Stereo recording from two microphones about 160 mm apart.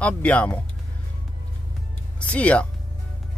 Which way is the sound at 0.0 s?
10° left (ahead or behind).